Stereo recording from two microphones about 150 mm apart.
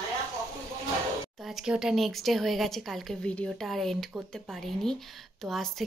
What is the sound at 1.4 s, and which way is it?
Speech, 5° right (ahead or behind).